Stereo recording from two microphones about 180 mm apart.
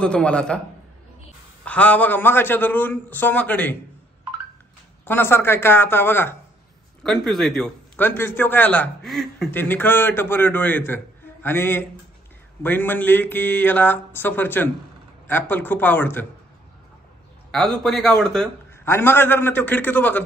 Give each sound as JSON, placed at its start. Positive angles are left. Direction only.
{"t": 0.0, "sound": "a man's voice", "side_deg": 5}
{"t": 1.6, "sound": "a man's voice", "side_deg": 10}
{"t": 5.0, "sound": "a man's voice", "side_deg": 10}
{"t": 7.0, "sound": "a man's voice", "side_deg": 0}
{"t": 9.5, "sound": "a man's voice", "side_deg": 10}
{"t": 17.5, "sound": "a man's voice", "side_deg": 0}